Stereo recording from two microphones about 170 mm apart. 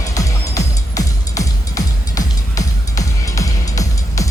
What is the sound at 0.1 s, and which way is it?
Music, 20° left (ahead or behind).